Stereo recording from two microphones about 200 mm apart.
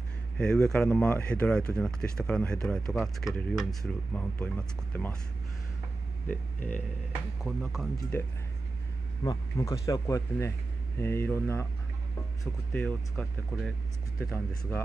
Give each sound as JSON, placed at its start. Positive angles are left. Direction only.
{"t": 0.4, "sound": "speech", "side_deg": 5}
{"t": 6.2, "sound": "speech", "side_deg": 10}
{"t": 12.7, "sound": "speech", "side_deg": 5}